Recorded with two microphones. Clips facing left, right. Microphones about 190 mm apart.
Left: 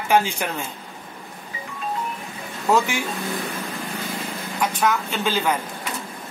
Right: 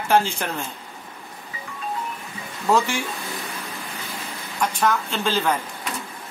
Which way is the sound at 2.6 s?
5° left (ahead or behind).